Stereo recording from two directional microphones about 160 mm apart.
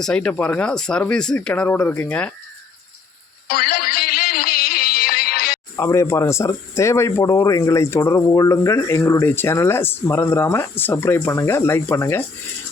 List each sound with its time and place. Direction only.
0.0 s speech: 5° left (ahead or behind)
3.5 s music: 70° left (ahead or behind)
5.7 s speech: 20° left (ahead or behind)